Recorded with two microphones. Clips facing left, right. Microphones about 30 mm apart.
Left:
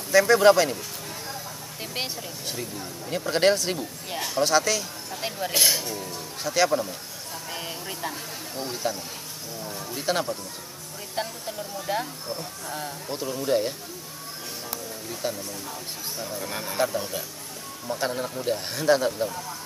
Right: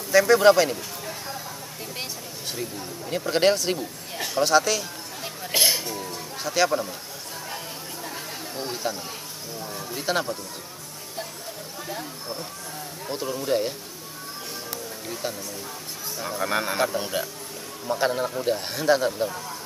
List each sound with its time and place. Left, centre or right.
0.1 s a man's voice: centre
2.5 s speech: centre
7.5 s a sound: left
8.1 s a sound: centre
9.6 s a man's voice: centre
11.9 s speech: left
13.0 s speech: centre
15.2 s a man's voice: centre
16.3 s speech: right
16.7 s speech: centre
17.8 s a man's voice: centre